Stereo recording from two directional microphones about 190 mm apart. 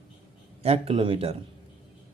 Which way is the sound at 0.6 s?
30° right (ahead or behind).